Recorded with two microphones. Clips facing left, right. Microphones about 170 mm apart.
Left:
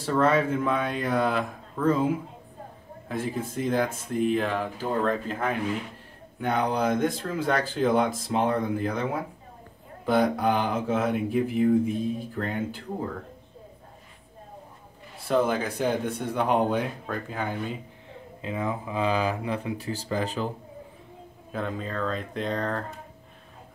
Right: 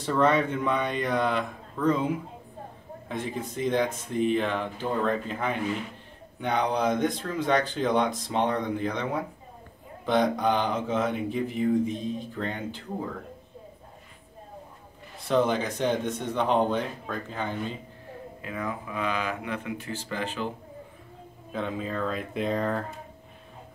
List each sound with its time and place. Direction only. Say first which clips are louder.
0.0 s speech: left 1 dB; 5° left (ahead or behind)
3.4 s speech: right 2 dB; 5° left (ahead or behind)
15.2 s speech: even; 5° left (ahead or behind)
18.4 s speech: left 4 dB; 25° left (ahead or behind)
21.5 s speech: even; centre (ahead or behind)